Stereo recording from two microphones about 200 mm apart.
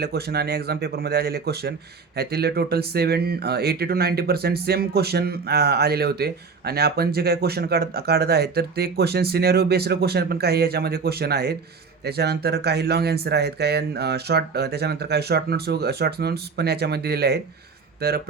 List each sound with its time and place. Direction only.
0.0 s speech: 55° right (ahead or behind)